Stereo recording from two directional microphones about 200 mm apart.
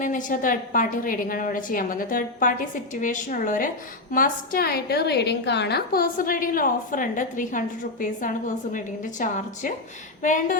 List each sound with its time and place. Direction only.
0.0 s a woman's voice: 40° left (ahead or behind)